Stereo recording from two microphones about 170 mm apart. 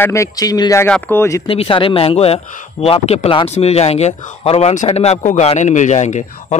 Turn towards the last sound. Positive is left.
turn(degrees=40)  # may be behind; listen again after turning